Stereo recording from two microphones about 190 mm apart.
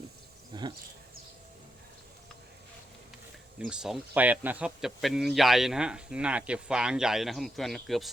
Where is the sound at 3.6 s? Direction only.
5° right (ahead or behind).